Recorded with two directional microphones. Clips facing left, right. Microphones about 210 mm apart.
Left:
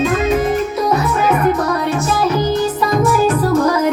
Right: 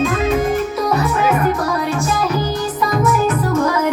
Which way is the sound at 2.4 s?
25° left (ahead or behind).